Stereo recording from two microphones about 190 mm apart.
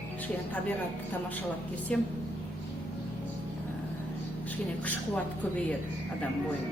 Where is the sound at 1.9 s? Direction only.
5° left (ahead or behind).